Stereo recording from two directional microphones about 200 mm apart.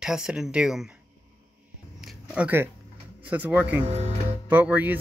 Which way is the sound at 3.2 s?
10° right (ahead or behind).